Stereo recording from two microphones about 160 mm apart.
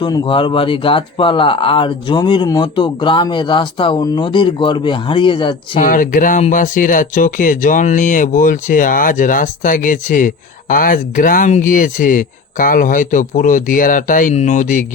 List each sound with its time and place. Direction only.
0.0 s speech: 30° left (ahead or behind)
5.8 s speech: 55° left (ahead or behind)